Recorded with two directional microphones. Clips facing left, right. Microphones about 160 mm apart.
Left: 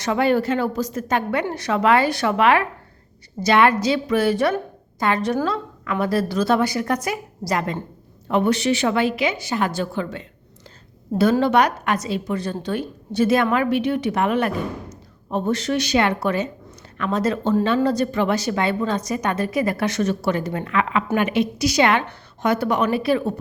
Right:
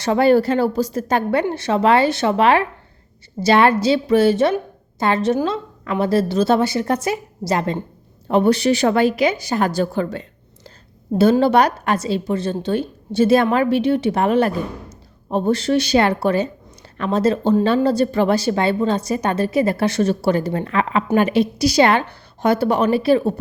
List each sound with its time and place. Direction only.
0.0 s a woman's voice: 35° right (ahead or behind)